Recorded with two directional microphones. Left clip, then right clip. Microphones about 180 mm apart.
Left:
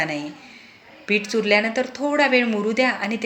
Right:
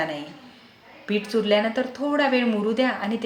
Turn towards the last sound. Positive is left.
turn(degrees=20)  # may be behind; listen again after turning